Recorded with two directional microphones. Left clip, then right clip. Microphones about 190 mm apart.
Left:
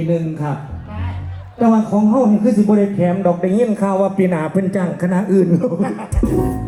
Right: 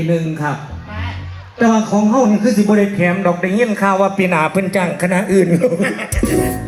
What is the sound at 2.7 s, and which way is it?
A man's voice, 5° left (ahead or behind).